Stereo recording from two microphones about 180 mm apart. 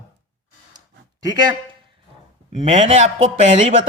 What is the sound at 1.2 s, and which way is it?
Speech, 20° right (ahead or behind).